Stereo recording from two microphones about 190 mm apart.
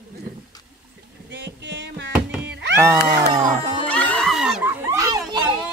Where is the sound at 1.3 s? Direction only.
65° right (ahead or behind).